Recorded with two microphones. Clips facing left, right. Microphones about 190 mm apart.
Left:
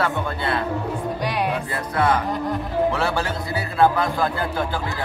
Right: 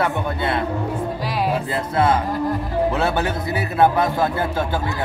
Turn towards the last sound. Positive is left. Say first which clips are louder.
# right 2 dB
turn(degrees=-25)  # may be behind; listen again after turning